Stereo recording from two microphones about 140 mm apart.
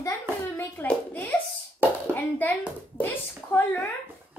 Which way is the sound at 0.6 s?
15° left (ahead or behind).